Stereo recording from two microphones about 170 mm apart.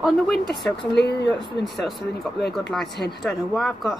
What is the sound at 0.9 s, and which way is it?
Speech, 90° left.